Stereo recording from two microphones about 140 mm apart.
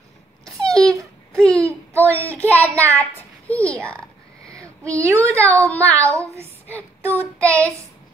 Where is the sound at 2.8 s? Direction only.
10° left (ahead or behind).